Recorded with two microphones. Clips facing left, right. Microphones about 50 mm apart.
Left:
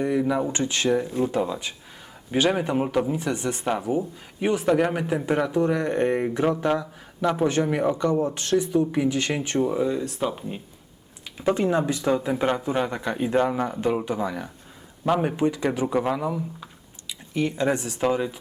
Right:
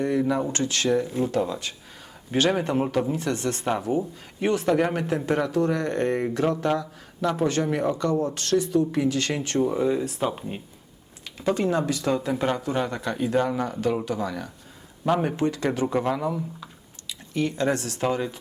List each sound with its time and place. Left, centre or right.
0.0 s speech: centre
0.5 s speech: centre
1.0 s speech: centre
1.3 s speech: centre
9.6 s speech: centre
11.3 s speech: left